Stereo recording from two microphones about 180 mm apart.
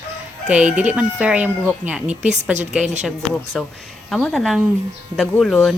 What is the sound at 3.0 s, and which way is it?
Speech, centre (ahead or behind).